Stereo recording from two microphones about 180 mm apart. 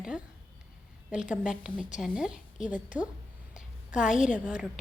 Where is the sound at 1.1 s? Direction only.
5° right (ahead or behind).